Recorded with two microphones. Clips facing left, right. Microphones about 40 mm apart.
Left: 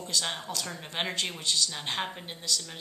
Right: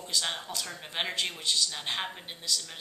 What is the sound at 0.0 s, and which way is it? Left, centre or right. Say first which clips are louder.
Speech: even; centre.